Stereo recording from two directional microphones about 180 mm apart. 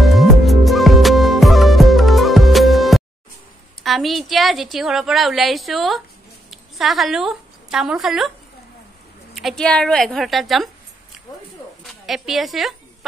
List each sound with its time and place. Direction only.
0.0 s music: centre (ahead or behind)
3.8 s a woman's voice: centre (ahead or behind)
9.3 s a woman's voice: centre (ahead or behind)
11.8 s speech: centre (ahead or behind)